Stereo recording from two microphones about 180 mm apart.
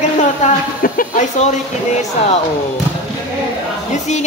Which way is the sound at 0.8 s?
45° left (ahead or behind).